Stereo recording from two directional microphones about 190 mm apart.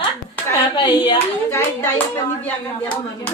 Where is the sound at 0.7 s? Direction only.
25° left (ahead or behind).